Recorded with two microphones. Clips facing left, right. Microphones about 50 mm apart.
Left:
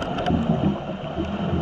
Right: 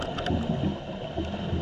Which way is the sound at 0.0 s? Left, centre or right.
Left.